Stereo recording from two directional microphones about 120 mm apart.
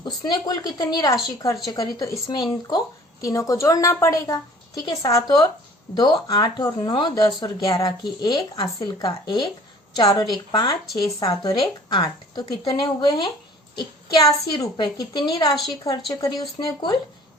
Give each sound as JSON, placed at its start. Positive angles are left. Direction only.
{"t": 0.0, "sound": "speech", "side_deg": 35}
{"t": 13.7, "sound": "child singing", "side_deg": 35}
{"t": 14.6, "sound": "speech", "side_deg": 35}